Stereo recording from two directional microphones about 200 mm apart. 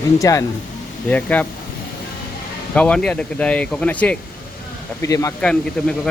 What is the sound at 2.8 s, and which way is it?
Speech, 5° left (ahead or behind).